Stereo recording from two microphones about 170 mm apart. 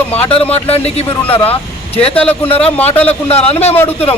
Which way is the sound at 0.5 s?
35° left (ahead or behind).